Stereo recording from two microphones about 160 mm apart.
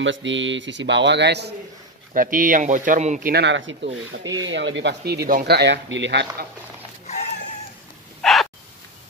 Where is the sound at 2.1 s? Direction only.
60° right (ahead or behind).